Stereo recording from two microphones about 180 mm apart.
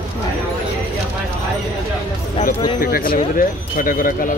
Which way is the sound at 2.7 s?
55° left (ahead or behind).